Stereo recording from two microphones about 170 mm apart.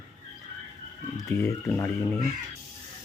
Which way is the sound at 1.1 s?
15° left (ahead or behind).